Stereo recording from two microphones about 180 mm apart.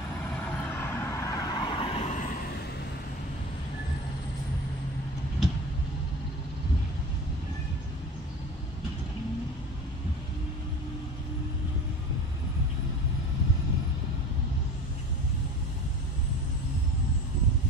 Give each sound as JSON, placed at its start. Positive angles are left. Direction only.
{"t": 0.7, "sound": "vehicle", "side_deg": 10}
{"t": 5.4, "sound": "vehicle", "side_deg": 0}